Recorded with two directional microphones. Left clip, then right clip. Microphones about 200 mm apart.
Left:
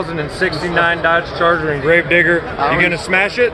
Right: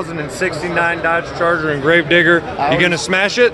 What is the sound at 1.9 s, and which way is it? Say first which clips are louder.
Speech: right 1 dB; 30° right (ahead or behind).